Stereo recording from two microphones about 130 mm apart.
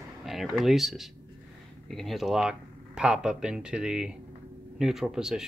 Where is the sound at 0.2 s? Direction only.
Centre (ahead or behind).